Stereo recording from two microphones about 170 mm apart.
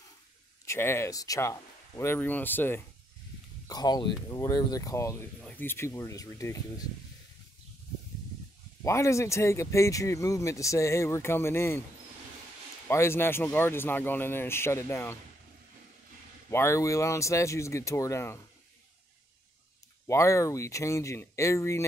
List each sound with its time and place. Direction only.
0.7 s speech: 15° left (ahead or behind)
3.6 s speech: 25° left (ahead or behind)
8.8 s speech: 15° left (ahead or behind)
12.8 s speech: 15° left (ahead or behind)
16.4 s speech: 15° left (ahead or behind)
20.1 s speech: 15° left (ahead or behind)